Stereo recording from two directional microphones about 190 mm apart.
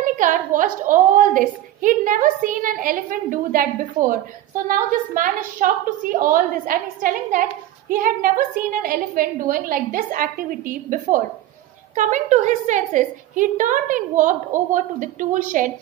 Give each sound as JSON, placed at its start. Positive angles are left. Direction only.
{"t": 0.0, "sound": "a woman's voice", "side_deg": -45}